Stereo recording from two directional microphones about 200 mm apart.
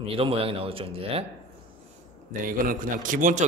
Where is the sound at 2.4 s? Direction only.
45° right (ahead or behind).